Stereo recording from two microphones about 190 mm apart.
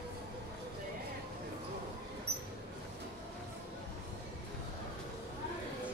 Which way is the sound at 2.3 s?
60° right (ahead or behind).